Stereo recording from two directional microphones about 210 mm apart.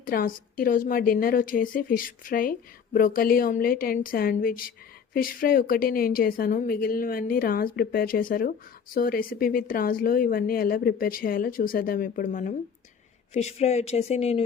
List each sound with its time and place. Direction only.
0.0 s a woman's voice: 40° left (ahead or behind)